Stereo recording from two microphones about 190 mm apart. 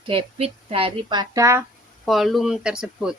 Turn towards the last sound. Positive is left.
turn(degrees=-5)  # may be behind; listen again after turning